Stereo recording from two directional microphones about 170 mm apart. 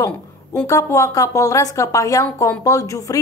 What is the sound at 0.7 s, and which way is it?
A woman's voice, 20° left (ahead or behind).